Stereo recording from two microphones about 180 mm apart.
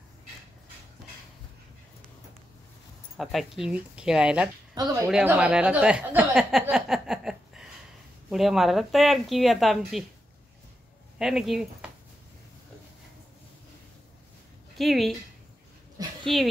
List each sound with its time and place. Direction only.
3.2 s speech: centre (ahead or behind)
11.1 s speech: centre (ahead or behind)
14.8 s speech: centre (ahead or behind)
16.0 s dog: 20° right (ahead or behind)